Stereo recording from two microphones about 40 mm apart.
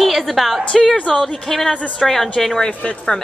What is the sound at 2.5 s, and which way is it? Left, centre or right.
Speech, left.